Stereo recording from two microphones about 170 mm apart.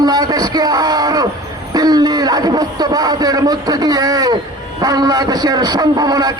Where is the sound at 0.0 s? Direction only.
25° right (ahead or behind).